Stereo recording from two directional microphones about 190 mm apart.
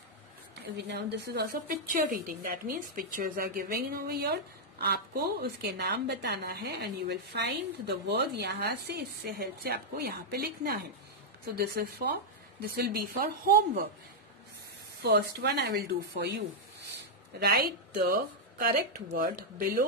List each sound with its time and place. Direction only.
0.7 s a woman's voice: 60° right (ahead or behind)
15.0 s a woman's voice: 60° right (ahead or behind)
17.4 s a woman's voice: 60° right (ahead or behind)